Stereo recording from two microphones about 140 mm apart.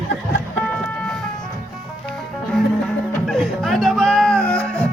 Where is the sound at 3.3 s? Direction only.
Centre (ahead or behind).